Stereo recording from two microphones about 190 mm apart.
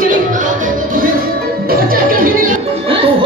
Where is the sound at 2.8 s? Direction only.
30° right (ahead or behind).